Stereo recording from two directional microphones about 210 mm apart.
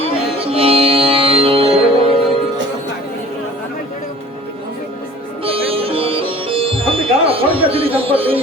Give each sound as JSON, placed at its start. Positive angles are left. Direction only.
{"t": 0.5, "sound": "music", "side_deg": -25}
{"t": 5.4, "sound": "sitar", "side_deg": -25}